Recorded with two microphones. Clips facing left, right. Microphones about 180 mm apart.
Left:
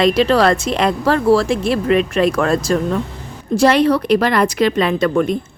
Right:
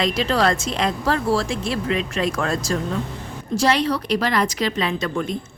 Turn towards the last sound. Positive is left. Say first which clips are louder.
# left 8 dB
turn(degrees=60)  # may be behind; listen again after turning